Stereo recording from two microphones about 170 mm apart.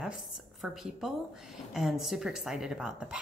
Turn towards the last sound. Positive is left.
turn(degrees=-5)  # may be behind; listen again after turning